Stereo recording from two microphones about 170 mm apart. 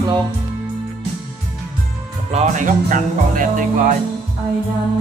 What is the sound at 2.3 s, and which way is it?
Music, 50° right (ahead or behind).